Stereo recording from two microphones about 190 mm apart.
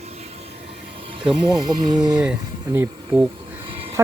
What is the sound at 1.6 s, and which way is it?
Speech, 20° right (ahead or behind).